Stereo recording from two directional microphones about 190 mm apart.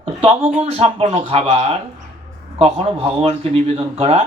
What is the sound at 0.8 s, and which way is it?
Speech, 30° right (ahead or behind).